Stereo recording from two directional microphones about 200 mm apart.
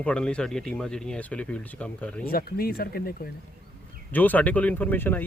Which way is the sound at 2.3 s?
50° left (ahead or behind).